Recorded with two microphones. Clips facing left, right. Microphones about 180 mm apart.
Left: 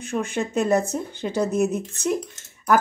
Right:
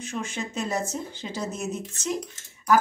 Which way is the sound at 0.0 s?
60° left (ahead or behind).